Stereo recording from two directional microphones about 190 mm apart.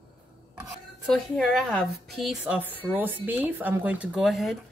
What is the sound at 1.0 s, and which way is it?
A woman's voice, centre (ahead or behind).